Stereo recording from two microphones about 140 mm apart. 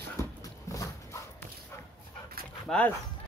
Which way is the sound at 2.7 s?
10° left (ahead or behind).